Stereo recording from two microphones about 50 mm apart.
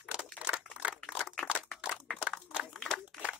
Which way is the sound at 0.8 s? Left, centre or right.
Right.